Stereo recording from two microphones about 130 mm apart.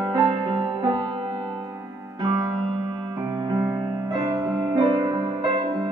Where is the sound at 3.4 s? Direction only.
35° right (ahead or behind).